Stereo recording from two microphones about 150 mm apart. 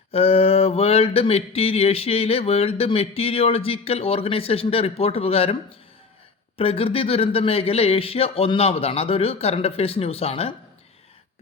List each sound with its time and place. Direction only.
0.1 s mantra: 40° left (ahead or behind)
6.6 s mantra: 40° left (ahead or behind)